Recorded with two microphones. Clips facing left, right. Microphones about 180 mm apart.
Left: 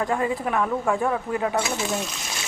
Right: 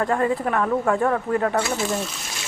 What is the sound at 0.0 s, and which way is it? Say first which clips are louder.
Speech: right 3 dB; 5° left (ahead or behind).